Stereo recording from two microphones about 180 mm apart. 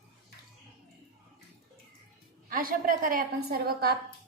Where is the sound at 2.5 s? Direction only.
50° right (ahead or behind).